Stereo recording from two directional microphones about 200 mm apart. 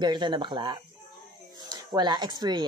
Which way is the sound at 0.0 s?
25° right (ahead or behind).